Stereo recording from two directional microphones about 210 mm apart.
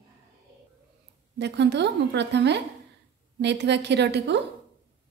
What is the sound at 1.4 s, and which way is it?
A woman's voice, 55° right (ahead or behind).